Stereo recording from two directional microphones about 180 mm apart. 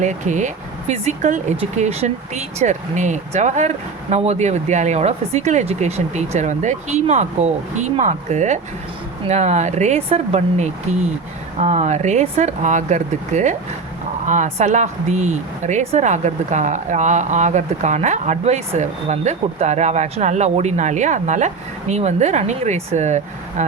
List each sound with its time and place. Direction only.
0.0 s speech: 45° right (ahead or behind)